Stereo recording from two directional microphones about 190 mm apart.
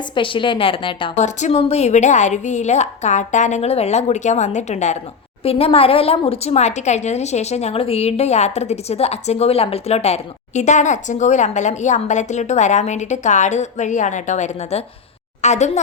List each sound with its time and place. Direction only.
0.2 s a woman's voice: 25° left (ahead or behind)